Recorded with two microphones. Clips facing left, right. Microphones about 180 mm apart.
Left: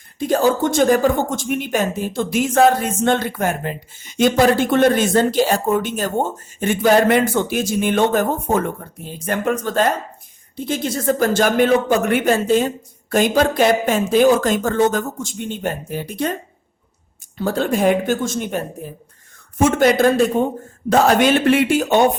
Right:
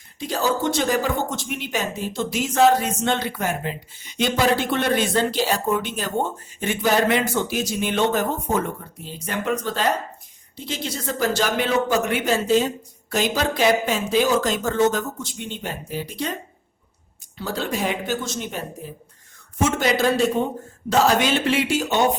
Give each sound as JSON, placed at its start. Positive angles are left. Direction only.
{"t": 0.2, "sound": "a man's voice", "side_deg": 50}